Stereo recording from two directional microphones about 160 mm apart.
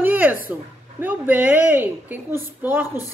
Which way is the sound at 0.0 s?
10° right (ahead or behind).